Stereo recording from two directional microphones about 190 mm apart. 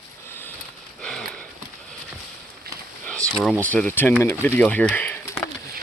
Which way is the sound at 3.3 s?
Centre (ahead or behind).